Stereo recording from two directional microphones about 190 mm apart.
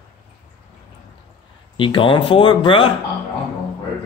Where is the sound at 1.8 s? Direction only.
25° left (ahead or behind).